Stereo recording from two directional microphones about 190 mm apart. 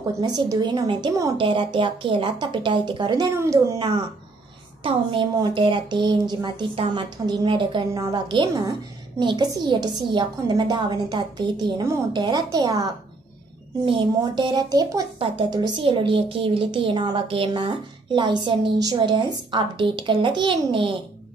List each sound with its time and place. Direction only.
0.2 s a woman's voice: 20° right (ahead or behind)